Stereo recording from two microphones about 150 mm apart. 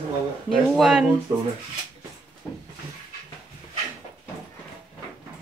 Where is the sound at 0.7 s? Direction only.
Centre (ahead or behind).